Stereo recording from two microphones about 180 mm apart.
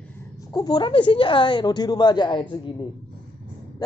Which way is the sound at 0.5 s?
25° left (ahead or behind).